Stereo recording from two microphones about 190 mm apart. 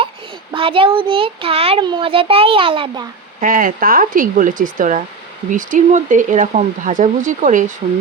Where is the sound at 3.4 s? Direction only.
45° right (ahead or behind).